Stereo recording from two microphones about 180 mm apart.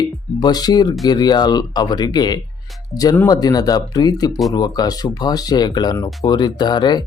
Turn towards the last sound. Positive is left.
turn(degrees=25)  # may be behind; listen again after turning